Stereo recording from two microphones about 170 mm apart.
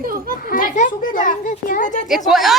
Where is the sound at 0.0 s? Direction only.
55° right (ahead or behind).